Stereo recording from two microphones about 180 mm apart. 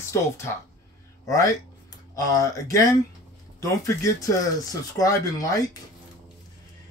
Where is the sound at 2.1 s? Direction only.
20° left (ahead or behind).